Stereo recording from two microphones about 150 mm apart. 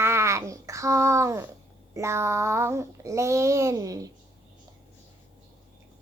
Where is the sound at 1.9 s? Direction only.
20° right (ahead or behind).